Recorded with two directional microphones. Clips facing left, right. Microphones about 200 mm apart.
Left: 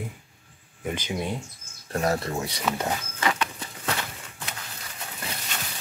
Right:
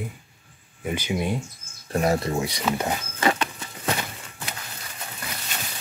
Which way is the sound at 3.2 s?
30° right (ahead or behind).